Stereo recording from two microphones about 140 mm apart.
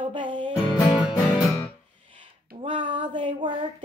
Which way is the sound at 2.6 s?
35° right (ahead or behind).